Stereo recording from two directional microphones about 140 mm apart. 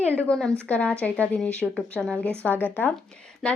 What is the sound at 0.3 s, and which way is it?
Speech, 5° left (ahead or behind).